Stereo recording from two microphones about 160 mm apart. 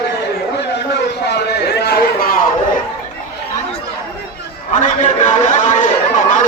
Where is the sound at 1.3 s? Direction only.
90° left; by 2.4 s 75° left (ahead or behind).